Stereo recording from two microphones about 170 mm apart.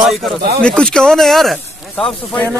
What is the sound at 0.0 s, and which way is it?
A man's voice, centre (ahead or behind).